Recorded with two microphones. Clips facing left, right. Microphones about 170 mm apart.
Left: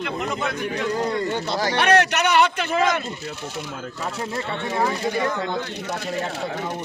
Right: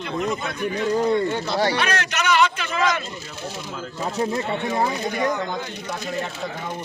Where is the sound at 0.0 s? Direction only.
70° left (ahead or behind).